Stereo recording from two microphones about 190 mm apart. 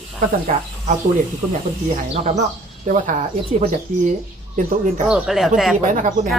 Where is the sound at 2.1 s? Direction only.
35° right (ahead or behind).